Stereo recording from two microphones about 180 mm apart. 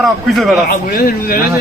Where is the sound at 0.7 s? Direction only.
55° left (ahead or behind).